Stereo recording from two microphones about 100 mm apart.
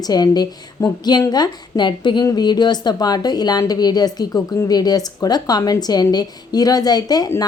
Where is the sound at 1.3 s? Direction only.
45° left (ahead or behind).